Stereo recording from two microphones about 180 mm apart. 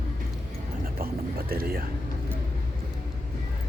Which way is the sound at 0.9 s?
55° right (ahead or behind).